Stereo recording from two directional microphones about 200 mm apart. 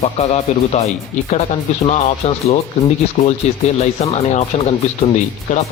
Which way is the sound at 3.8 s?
35° left (ahead or behind).